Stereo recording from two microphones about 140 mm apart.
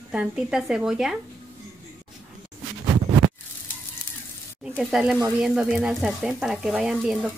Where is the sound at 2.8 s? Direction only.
35° right (ahead or behind).